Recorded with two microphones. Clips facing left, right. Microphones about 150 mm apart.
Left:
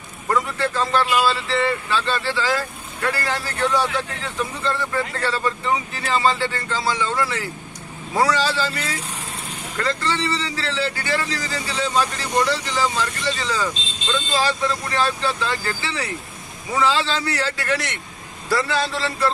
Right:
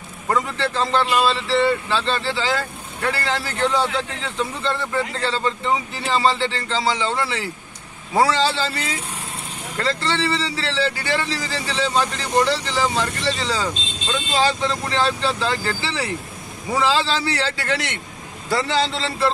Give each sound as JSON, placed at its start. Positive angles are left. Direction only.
{"t": 0.3, "sound": "speech", "side_deg": -25}